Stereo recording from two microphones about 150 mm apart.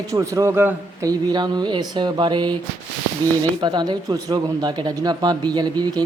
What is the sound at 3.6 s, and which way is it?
A man's voice, 30° right (ahead or behind).